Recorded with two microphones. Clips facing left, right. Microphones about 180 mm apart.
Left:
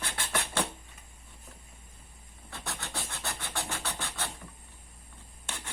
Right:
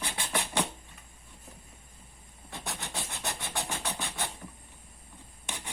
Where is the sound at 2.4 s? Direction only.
20° right (ahead or behind).